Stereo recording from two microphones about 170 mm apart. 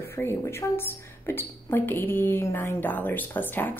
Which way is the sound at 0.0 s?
15° left (ahead or behind).